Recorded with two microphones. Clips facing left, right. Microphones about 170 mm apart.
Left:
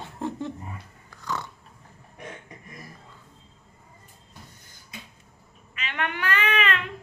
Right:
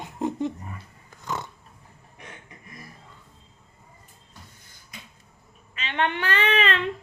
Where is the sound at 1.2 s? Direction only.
20° right (ahead or behind).